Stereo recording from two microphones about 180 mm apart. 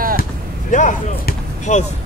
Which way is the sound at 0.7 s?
45° left (ahead or behind).